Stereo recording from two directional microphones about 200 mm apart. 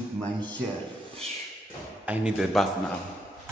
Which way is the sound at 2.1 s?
5° right (ahead or behind).